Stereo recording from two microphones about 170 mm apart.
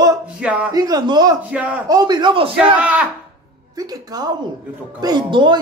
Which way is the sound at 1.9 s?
25° right (ahead or behind).